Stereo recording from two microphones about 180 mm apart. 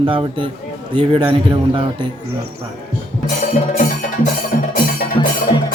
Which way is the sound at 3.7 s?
40° left (ahead or behind).